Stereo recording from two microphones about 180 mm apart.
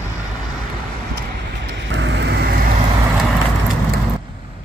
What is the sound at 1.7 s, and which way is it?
Vehicle, 80° right.